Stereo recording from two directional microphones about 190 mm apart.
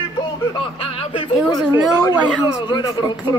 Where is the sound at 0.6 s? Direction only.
25° left (ahead or behind).